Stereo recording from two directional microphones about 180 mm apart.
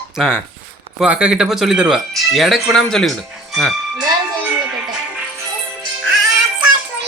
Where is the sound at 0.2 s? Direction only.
Centre (ahead or behind).